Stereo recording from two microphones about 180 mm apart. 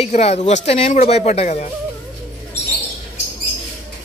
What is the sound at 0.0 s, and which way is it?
Speech, 35° left (ahead or behind).